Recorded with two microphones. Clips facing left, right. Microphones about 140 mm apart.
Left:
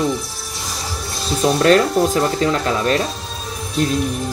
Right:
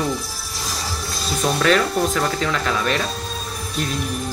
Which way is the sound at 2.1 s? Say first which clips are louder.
Left 4 dB; 35° left (ahead or behind).